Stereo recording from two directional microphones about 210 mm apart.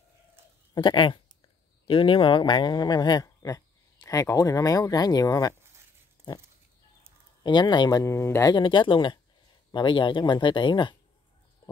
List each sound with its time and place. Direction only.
0.7 s speech: 20° left (ahead or behind)
7.4 s speech: 20° left (ahead or behind)
11.6 s a sound: 20° left (ahead or behind)